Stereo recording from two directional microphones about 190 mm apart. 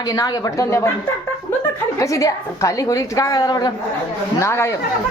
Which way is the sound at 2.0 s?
15° left (ahead or behind).